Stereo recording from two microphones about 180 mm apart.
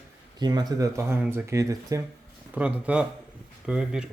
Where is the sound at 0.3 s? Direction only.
20° right (ahead or behind).